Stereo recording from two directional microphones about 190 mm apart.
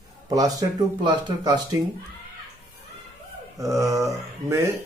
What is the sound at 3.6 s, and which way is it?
Speech, 15° right (ahead or behind).